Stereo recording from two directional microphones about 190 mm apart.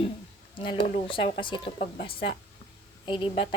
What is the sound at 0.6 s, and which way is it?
Speech, 25° left (ahead or behind).